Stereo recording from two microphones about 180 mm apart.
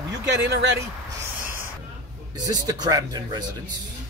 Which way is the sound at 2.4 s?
20° right (ahead or behind).